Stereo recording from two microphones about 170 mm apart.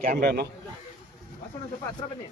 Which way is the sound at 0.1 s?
65° right (ahead or behind).